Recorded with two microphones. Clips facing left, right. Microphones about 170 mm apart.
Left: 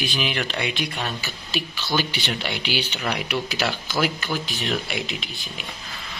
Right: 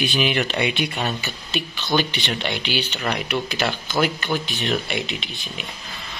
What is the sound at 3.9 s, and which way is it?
Speech, 25° right (ahead or behind).